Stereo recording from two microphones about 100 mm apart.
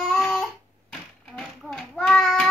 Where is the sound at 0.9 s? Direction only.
5° left (ahead or behind).